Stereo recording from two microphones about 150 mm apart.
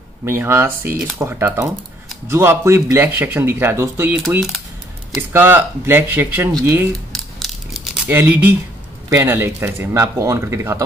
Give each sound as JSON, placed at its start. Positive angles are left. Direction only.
{"t": 0.2, "sound": "speech", "side_deg": -15}
{"t": 5.3, "sound": "speech", "side_deg": -15}
{"t": 7.3, "sound": "a sound", "side_deg": 0}
{"t": 8.1, "sound": "speech", "side_deg": -10}